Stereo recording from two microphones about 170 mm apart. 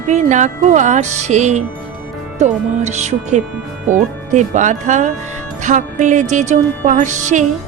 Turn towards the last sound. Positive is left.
turn(degrees=-45)  # may be behind; listen again after turning